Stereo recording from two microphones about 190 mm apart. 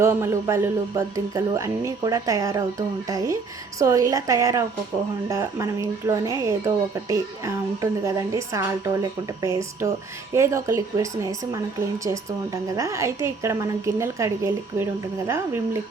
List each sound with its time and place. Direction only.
0.0 s speech: 15° right (ahead or behind)
12.7 s speech: 15° right (ahead or behind)